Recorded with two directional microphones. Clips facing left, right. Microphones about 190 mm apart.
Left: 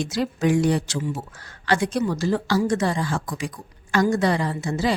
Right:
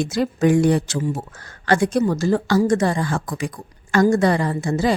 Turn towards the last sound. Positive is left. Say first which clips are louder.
# right 4 dB
turn(degrees=-50)  # may be behind; listen again after turning